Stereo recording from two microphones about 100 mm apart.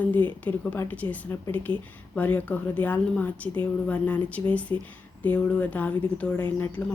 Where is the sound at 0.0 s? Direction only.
15° left (ahead or behind).